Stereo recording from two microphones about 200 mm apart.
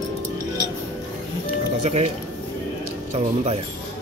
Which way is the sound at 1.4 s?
30° right (ahead or behind).